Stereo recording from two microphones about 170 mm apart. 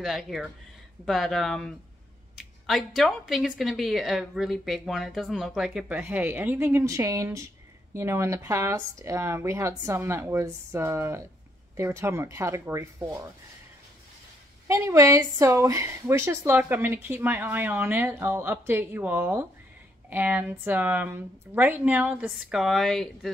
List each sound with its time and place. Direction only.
0.0 s a woman's voice: centre (ahead or behind)
14.7 s a woman's voice: 15° right (ahead or behind); by 23.3 s centre (ahead or behind)